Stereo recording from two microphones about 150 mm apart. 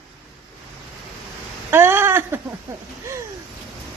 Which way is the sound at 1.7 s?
15° right (ahead or behind).